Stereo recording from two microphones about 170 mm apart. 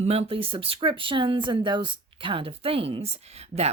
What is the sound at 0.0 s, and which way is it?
A woman's voice, 35° right (ahead or behind).